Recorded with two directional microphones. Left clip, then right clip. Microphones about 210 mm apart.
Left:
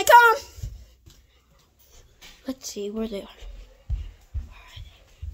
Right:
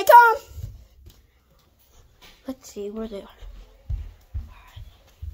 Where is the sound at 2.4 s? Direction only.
20° left (ahead or behind).